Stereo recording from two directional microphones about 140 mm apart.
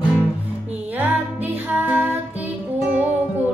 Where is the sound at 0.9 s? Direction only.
10° right (ahead or behind).